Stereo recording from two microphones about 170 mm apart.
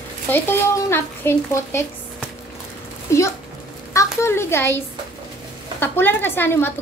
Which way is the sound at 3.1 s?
15° left (ahead or behind).